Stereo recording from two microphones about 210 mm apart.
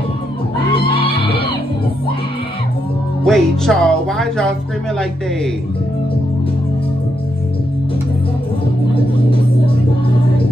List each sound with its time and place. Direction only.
0.7 s neigh: 25° left (ahead or behind)
3.3 s speech: centre (ahead or behind)